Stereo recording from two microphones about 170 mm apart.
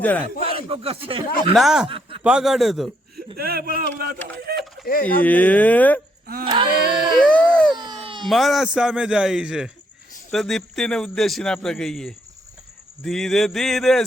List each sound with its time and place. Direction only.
0.0 s speech: 10° left (ahead or behind)
0.4 s speech: 35° right (ahead or behind)
1.5 s a man's voice: 5° right (ahead or behind)
1.9 s a sound: 30° right (ahead or behind)
2.2 s a man's voice: 5° right (ahead or behind)
3.3 s speech: 65° right (ahead or behind)
5.2 s speech: 10° left (ahead or behind)
6.4 s a sound: 30° right (ahead or behind)
7.2 s a sound: 5° left (ahead or behind)
7.9 s baby cry: 30° right (ahead or behind)
8.3 s a man's voice: centre (ahead or behind)